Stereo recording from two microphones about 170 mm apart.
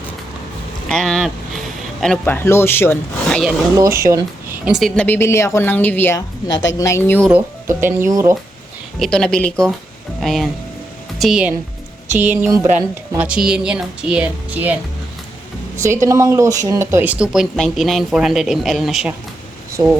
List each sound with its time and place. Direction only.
0.9 s a sound: 5° left (ahead or behind)
2.2 s a woman's voice: 15° left (ahead or behind)
3.8 s speech: 15° right (ahead or behind)
4.6 s speech: centre (ahead or behind)
5.0 s a woman's voice: 15° left (ahead or behind)
7.3 s speech: 10° right (ahead or behind)
9.0 s speech: 5° left (ahead or behind)
15.8 s speech: 15° right (ahead or behind); by 19.1 s centre (ahead or behind)